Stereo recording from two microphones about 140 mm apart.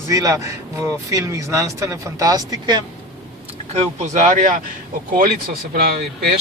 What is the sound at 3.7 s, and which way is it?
Speech, 55° right (ahead or behind).